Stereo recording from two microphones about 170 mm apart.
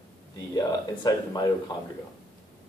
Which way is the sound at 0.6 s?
20° left (ahead or behind).